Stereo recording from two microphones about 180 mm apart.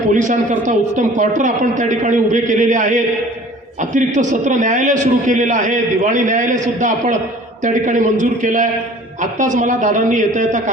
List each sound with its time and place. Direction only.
0.1 s a man's voice: 45° right (ahead or behind)